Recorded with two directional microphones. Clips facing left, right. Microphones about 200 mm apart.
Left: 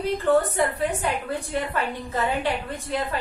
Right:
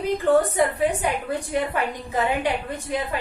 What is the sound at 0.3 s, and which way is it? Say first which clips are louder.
A woman's voice: right 2 dB; 15° right (ahead or behind).